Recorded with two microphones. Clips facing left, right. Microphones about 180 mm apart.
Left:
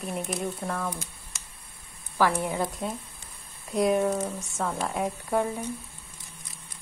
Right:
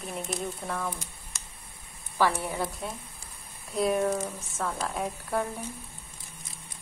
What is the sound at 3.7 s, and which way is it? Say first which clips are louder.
A woman's voice: left 2 dB; centre (ahead or behind).